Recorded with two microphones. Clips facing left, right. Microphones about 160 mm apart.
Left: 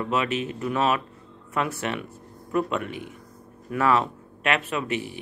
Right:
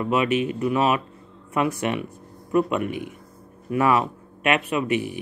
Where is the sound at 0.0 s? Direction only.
15° right (ahead or behind).